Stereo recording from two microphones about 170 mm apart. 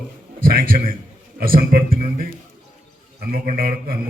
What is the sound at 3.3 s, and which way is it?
Speech, 60° right (ahead or behind).